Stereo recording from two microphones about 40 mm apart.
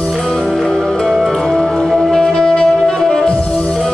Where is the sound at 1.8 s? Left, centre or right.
Centre.